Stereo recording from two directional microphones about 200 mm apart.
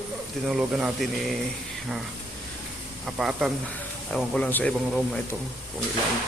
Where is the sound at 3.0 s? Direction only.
Centre (ahead or behind).